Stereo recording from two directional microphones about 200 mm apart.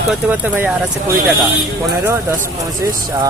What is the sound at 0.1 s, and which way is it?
Speech, 10° right (ahead or behind).